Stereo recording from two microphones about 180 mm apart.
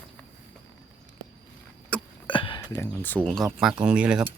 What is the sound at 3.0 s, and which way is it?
Speech, 5° left (ahead or behind).